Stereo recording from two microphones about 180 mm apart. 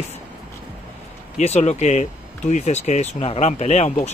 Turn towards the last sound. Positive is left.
turn(degrees=35)  # may be behind; listen again after turning